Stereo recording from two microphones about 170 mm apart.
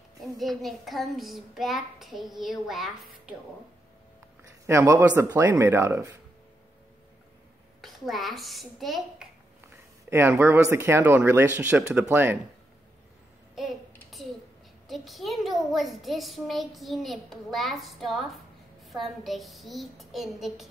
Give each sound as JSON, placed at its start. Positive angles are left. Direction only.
{"t": 0.4, "sound": "a child's voice", "side_deg": 0}
{"t": 4.6, "sound": "speech", "side_deg": -15}
{"t": 7.8, "sound": "a child's voice", "side_deg": 0}
{"t": 9.6, "sound": "speech", "side_deg": -15}
{"t": 14.1, "sound": "a sound", "side_deg": 0}
{"t": 14.9, "sound": "a child's voice", "side_deg": 0}